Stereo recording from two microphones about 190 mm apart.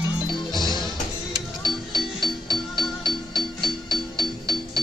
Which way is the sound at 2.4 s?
25° left (ahead or behind).